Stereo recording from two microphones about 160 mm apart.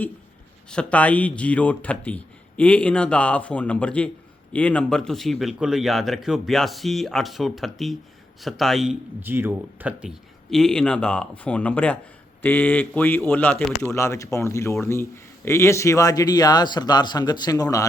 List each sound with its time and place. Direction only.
0.7 s speech: 5° left (ahead or behind)
9.2 s speech: 15° right (ahead or behind)
10.5 s speech: 5° left (ahead or behind); by 17.8 s 20° left (ahead or behind)